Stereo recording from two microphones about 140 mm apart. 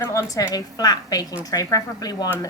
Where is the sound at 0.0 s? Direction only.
20° left (ahead or behind).